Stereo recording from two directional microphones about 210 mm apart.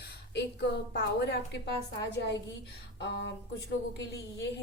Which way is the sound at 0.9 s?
55° left (ahead or behind).